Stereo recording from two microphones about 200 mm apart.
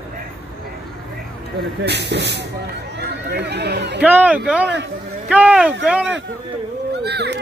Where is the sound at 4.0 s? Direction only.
5° right (ahead or behind).